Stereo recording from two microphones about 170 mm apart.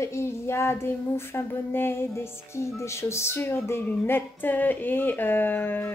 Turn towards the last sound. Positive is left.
turn(degrees=10)  # may be behind; listen again after turning